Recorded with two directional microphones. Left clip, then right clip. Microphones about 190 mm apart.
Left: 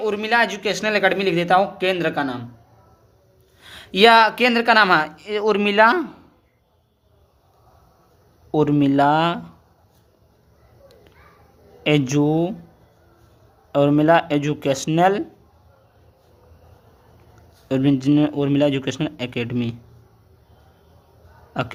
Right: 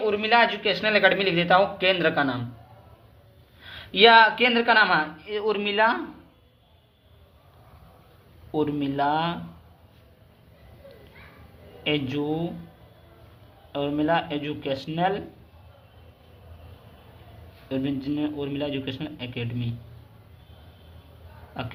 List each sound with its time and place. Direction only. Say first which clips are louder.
0.0 s a man's voice: left 1 dB; 30° left (ahead or behind)
3.6 s speech: left 3 dB; 35° left (ahead or behind); by 6.0 s 55° left (ahead or behind)
8.5 s speech: left 8 dB; 60° left (ahead or behind)
11.8 s speech: left 8 dB; 60° left (ahead or behind)
13.7 s speech: left 9 dB; 60° left (ahead or behind)
17.7 s speech: left 10 dB; 65° left (ahead or behind)